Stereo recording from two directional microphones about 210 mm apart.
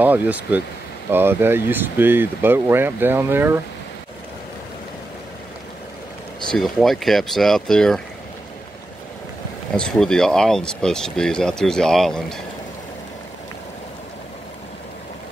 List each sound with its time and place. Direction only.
0.0 s speech: 10° right (ahead or behind)
6.5 s speech: centre (ahead or behind)
9.8 s speech: 5° left (ahead or behind)